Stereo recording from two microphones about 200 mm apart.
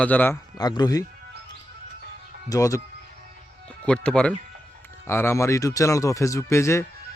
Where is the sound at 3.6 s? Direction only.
5° left (ahead or behind).